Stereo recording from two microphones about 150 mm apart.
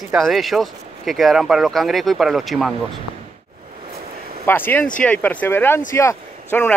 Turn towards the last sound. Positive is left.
turn(degrees=15)  # may be behind; listen again after turning